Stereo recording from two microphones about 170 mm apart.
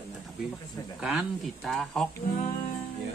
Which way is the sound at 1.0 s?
5° right (ahead or behind).